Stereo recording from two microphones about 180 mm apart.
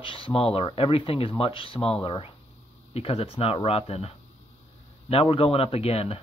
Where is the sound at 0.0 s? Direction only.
30° left (ahead or behind).